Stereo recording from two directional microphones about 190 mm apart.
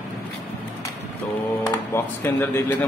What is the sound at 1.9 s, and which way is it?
Speech, 10° left (ahead or behind).